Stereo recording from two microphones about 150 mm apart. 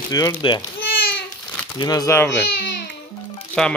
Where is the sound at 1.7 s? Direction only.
25° left (ahead or behind).